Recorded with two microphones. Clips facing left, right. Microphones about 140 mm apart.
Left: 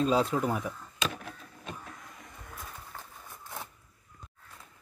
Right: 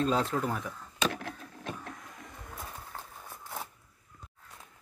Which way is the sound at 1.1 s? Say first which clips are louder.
Right 3 dB; 80° right.